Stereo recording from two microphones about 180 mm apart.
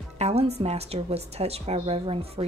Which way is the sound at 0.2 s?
35° right (ahead or behind).